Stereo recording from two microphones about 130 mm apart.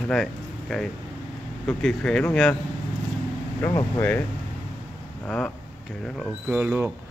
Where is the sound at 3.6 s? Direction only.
25° left (ahead or behind).